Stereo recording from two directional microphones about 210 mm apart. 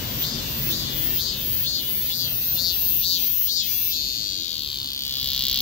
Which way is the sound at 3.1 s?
35° left (ahead or behind).